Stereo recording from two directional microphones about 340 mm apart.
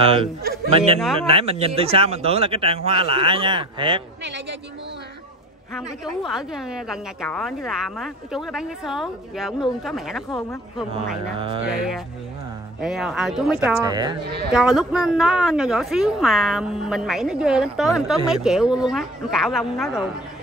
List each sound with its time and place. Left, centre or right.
1.2 s speech: centre
4.2 s a woman's voice: right
5.8 s a woman's voice: centre
10.9 s speech: centre
11.6 s a woman's voice: centre
14.5 s a woman's voice: centre